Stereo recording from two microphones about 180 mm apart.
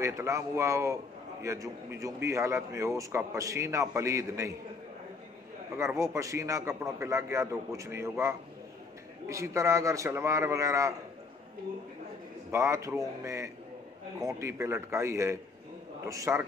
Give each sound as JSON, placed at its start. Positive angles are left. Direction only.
{"t": 0.0, "sound": "a man's voice", "side_deg": -15}
{"t": 5.9, "sound": "a man's voice", "side_deg": -15}
{"t": 12.4, "sound": "a man's voice", "side_deg": -15}